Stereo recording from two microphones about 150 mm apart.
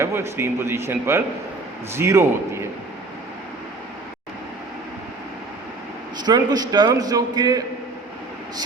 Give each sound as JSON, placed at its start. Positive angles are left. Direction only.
{"t": 0.0, "sound": "a man's voice", "side_deg": -15}
{"t": 6.1, "sound": "a man's voice", "side_deg": -25}